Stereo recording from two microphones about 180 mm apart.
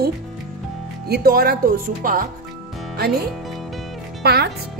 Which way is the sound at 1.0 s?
60° right (ahead or behind).